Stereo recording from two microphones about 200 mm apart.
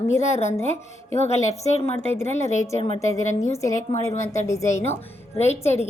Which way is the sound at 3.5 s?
15° left (ahead or behind).